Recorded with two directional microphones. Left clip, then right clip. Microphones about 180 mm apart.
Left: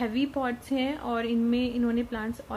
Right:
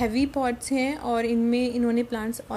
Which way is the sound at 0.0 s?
15° right (ahead or behind).